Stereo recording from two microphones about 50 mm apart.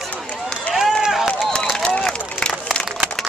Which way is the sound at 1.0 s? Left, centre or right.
Centre.